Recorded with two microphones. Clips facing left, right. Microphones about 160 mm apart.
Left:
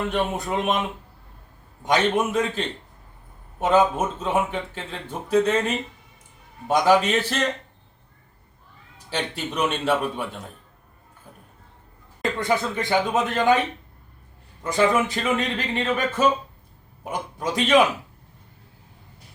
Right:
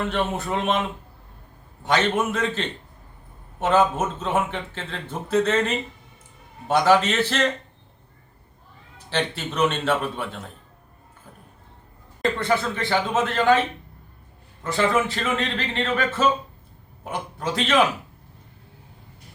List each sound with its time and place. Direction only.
0.1 s speech: 15° left (ahead or behind)
1.8 s speech: 15° left (ahead or behind)
9.0 s speech: 10° left (ahead or behind)
12.4 s speech: 15° left (ahead or behind)